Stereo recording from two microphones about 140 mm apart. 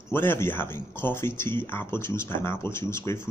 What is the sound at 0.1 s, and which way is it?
Speech, 15° left (ahead or behind).